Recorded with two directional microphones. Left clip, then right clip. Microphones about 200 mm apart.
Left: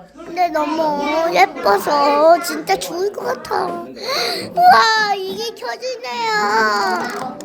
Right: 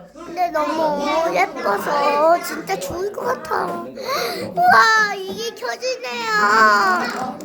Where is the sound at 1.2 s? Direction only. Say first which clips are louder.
Left 5 dB; 20° left (ahead or behind); by 7.0 s 5° left (ahead or behind).